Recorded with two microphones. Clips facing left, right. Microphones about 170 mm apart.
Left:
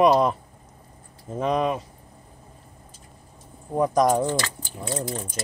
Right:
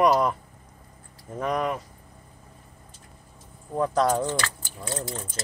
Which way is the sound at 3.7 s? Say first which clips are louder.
Left 3 dB; 15° left (ahead or behind).